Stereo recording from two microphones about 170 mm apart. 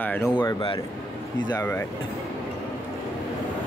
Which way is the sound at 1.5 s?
15° left (ahead or behind).